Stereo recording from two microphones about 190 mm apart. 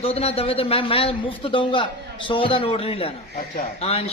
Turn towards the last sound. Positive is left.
turn(degrees=30)  # may be behind; listen again after turning